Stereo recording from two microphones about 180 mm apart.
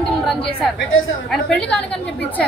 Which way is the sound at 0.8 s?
90° left.